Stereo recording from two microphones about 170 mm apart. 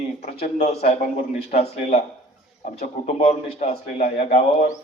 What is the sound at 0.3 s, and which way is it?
A man's voice, 40° left (ahead or behind).